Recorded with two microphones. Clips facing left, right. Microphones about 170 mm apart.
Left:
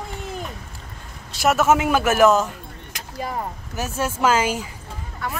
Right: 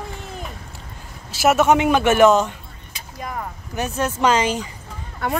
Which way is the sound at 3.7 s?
5° left (ahead or behind).